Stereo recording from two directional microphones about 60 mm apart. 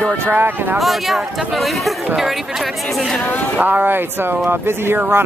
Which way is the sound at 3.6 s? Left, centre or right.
Right.